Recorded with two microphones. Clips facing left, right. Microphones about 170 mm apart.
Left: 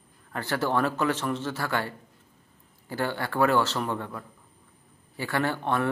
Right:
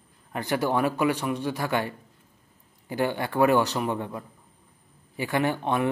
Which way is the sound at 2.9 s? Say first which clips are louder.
Right 3 dB; 15° right (ahead or behind).